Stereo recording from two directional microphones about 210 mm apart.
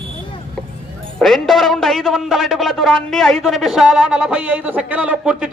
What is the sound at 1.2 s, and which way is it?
Speech, centre (ahead or behind).